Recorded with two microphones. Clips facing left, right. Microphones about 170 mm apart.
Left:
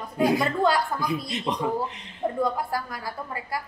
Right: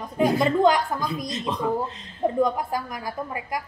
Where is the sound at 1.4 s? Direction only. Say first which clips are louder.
Right 3 dB; 15° left (ahead or behind).